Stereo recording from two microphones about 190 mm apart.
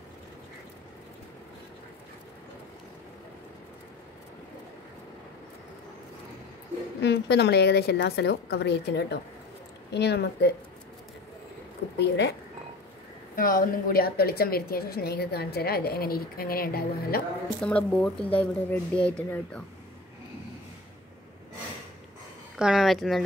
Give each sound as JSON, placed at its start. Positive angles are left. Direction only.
{"t": 7.0, "sound": "a woman's voice", "side_deg": 60}
{"t": 12.0, "sound": "a woman's voice", "side_deg": 65}
{"t": 13.4, "sound": "a woman's voice", "side_deg": 45}
{"t": 17.6, "sound": "speech", "side_deg": 5}
{"t": 22.6, "sound": "a woman's voice", "side_deg": 0}